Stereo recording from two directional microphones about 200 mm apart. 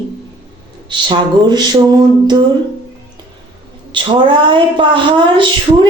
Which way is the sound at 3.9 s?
25° right (ahead or behind).